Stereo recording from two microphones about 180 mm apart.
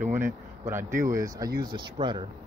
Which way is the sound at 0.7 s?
15° right (ahead or behind).